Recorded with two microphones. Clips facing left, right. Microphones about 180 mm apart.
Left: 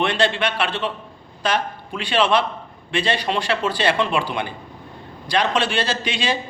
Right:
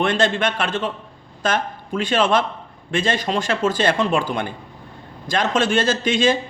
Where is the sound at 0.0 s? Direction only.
45° right (ahead or behind).